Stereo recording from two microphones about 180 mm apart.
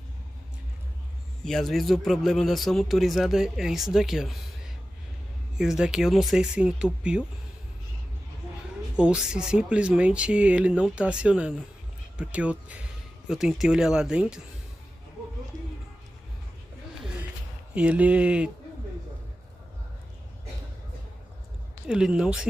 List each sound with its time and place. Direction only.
1.4 s a man's voice: centre (ahead or behind)
5.6 s a man's voice: 5° right (ahead or behind)
8.9 s a man's voice: 5° right (ahead or behind)
17.7 s speech: 10° right (ahead or behind)
21.8 s a man's voice: 5° right (ahead or behind)